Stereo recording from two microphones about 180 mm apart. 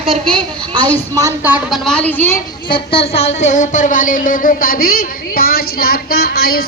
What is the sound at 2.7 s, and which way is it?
A woman's voice, 30° left (ahead or behind).